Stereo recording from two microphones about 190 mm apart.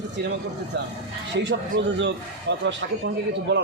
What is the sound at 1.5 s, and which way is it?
A man's voice, 70° right (ahead or behind).